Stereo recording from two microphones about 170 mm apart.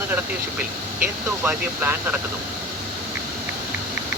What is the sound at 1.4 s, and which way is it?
Speech, 10° right (ahead or behind).